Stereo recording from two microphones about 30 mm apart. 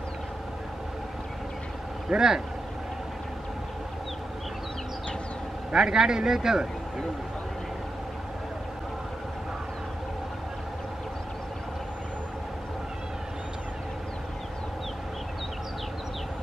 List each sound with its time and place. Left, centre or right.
2.0 s speech: right
5.8 s speech: right